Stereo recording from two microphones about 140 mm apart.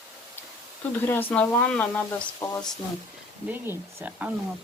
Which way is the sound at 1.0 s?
15° left (ahead or behind).